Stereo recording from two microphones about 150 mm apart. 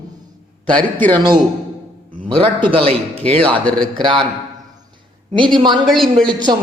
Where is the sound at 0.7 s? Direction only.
10° left (ahead or behind).